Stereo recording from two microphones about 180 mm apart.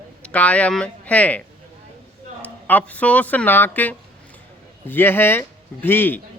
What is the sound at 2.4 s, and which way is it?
A man's voice, 10° left (ahead or behind).